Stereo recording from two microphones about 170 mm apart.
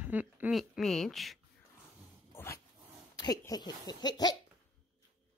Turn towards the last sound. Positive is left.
turn(degrees=25)  # may be behind; listen again after turning